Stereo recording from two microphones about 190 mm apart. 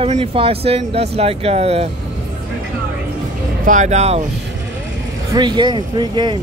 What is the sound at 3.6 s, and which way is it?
Speech, 40° right (ahead or behind).